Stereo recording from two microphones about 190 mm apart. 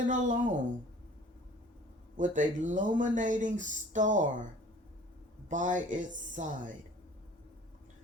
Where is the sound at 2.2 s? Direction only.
40° right (ahead or behind).